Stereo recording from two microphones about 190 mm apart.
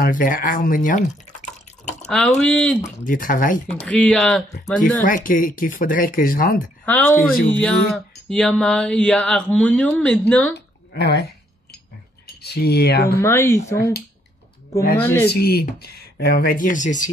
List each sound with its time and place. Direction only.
0.0 s speech: 45° left (ahead or behind)
2.0 s speech: 5° left (ahead or behind)
3.1 s speech: 45° left (ahead or behind)
3.8 s speech: 5° left (ahead or behind)
5.0 s speech: 45° left (ahead or behind)
6.9 s speech: 10° left (ahead or behind)
10.5 s a sound: 60° left (ahead or behind)
12.4 s speech: 60° left (ahead or behind)
13.2 s speech: 15° left (ahead or behind)
15.0 s speech: 10° left (ahead or behind)
15.2 s speech: 55° left (ahead or behind)